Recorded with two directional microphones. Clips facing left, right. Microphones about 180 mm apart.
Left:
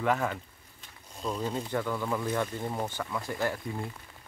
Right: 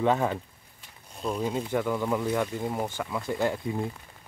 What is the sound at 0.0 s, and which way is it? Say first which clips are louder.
Speech: right 4 dB; 25° right (ahead or behind).